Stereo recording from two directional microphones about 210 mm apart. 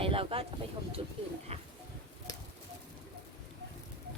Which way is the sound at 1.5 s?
30° right (ahead or behind).